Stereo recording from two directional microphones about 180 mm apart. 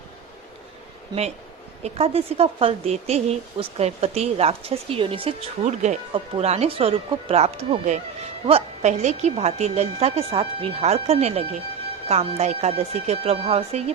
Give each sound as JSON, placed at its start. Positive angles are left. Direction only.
{"t": 1.8, "sound": "speech", "side_deg": -35}